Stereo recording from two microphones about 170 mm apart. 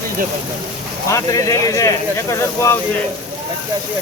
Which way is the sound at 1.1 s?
20° left (ahead or behind).